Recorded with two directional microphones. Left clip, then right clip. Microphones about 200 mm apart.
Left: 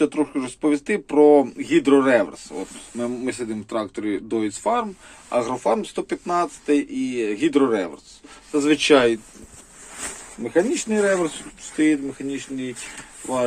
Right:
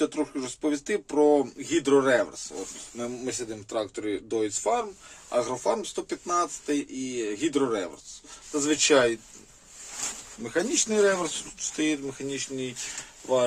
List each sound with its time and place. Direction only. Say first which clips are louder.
0.0 s speech: left 6 dB; centre (ahead or behind)
10.5 s speech: left 5 dB; 15° right (ahead or behind)